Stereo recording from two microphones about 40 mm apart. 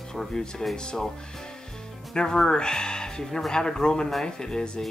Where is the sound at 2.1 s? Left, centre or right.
Centre.